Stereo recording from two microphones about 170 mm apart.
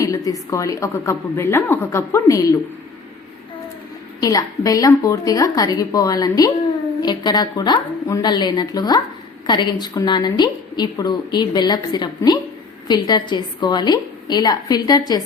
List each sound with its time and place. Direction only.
0.3 s a woman's voice: 20° left (ahead or behind)
4.2 s a woman's voice: 20° left (ahead or behind)